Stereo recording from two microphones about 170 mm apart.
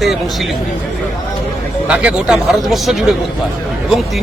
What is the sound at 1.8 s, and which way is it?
A man's voice, 5° right (ahead or behind).